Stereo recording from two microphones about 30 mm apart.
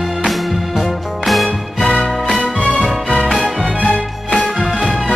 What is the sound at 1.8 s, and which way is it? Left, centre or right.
Music, left.